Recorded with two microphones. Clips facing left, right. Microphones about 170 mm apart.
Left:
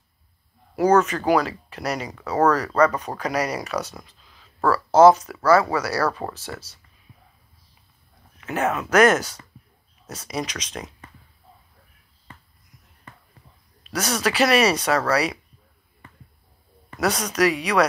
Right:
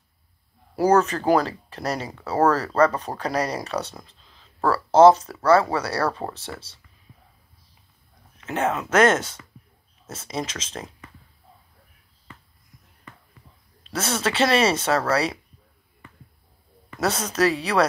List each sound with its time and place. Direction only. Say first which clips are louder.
0.7 s speech: left 1 dB; 30° right (ahead or behind)
8.5 s speech: left 1 dB; 25° right (ahead or behind)
13.8 s speech: left 1 dB; 25° right (ahead or behind)
17.0 s speech: left 1 dB; 30° right (ahead or behind)